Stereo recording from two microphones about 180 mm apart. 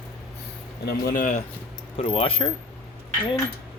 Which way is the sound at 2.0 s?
30° left (ahead or behind).